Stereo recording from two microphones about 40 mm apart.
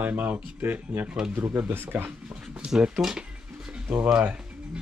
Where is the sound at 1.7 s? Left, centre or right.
Right.